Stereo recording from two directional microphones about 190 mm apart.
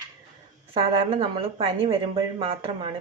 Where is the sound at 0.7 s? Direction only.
30° right (ahead or behind).